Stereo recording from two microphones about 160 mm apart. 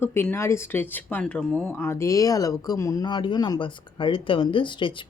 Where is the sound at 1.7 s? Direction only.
15° left (ahead or behind).